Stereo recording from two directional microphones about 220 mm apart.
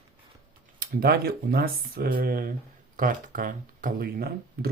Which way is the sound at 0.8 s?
45° right (ahead or behind).